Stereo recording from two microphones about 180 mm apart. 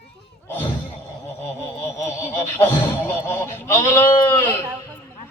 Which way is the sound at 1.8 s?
15° left (ahead or behind).